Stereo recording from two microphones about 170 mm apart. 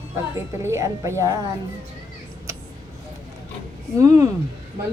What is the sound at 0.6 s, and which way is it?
Speech, 15° right (ahead or behind).